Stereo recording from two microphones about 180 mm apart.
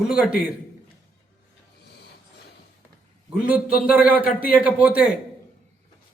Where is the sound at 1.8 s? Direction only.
65° left (ahead or behind).